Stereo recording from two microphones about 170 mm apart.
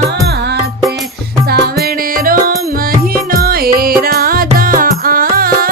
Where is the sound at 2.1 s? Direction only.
55° right (ahead or behind).